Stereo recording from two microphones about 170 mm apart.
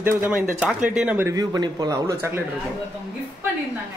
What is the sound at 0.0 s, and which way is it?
A man's voice, 10° right (ahead or behind).